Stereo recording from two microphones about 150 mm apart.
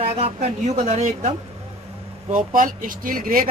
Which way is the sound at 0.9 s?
50° right (ahead or behind).